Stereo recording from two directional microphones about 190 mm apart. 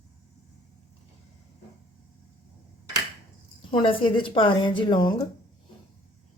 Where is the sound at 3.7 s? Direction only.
25° left (ahead or behind).